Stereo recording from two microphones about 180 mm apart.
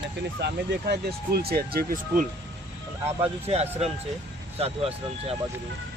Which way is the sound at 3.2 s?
35° right (ahead or behind).